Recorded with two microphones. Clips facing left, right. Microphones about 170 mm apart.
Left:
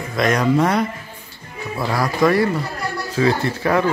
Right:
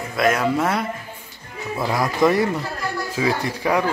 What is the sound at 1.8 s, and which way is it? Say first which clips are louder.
Speech: left 1 dB; 15° right (ahead or behind).